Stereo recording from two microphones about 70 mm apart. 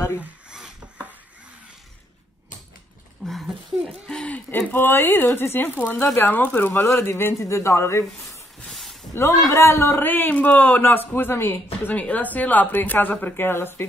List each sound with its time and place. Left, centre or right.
0.5 s a sound: centre
3.3 s speech: centre
4.5 s a man's voice: left
7.3 s a man's voice: left
9.1 s a man's voice: left
11.9 s a woman's voice: left